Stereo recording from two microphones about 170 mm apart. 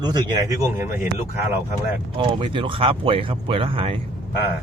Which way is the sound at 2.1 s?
30° right (ahead or behind).